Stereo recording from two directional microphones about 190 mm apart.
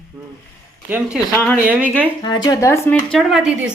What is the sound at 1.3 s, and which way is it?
Speech, 10° left (ahead or behind).